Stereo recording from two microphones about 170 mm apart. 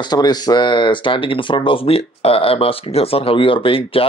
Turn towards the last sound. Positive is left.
turn(degrees=30)  # may be behind; listen again after turning